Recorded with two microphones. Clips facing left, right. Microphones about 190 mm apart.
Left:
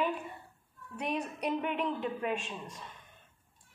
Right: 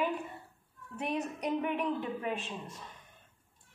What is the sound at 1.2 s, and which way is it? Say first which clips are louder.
Speech: right 2 dB; 20° right (ahead or behind).